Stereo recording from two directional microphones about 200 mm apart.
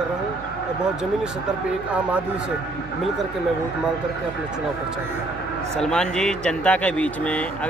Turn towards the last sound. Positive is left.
turn(degrees=5)  # may be behind; listen again after turning